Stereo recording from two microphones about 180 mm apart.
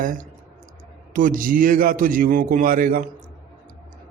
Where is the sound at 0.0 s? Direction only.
45° right (ahead or behind).